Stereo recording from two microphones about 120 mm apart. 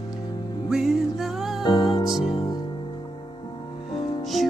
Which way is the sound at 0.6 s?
5° right (ahead or behind).